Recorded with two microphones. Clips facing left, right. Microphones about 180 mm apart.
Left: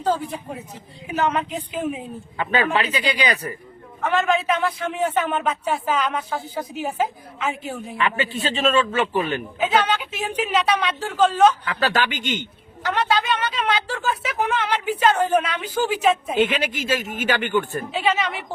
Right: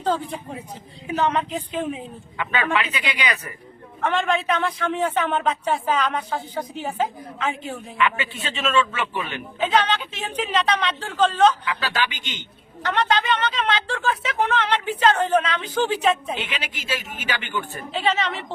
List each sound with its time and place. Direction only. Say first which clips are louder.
0.0 s a man's voice: left 1 dB; 10° left (ahead or behind)
2.4 s a man's voice: left 2 dB; 35° left (ahead or behind)
4.0 s a man's voice: left 2 dB; 5° left (ahead or behind)
7.9 s a man's voice: even; 35° left (ahead or behind)
9.6 s a woman's voice: even; 10° left (ahead or behind)
11.6 s speech: left 3 dB; 45° left (ahead or behind)
12.8 s a man's voice: even; 5° left (ahead or behind)
16.3 s speech: left 9 dB; 50° left (ahead or behind)
17.9 s a man's voice: even; 10° left (ahead or behind)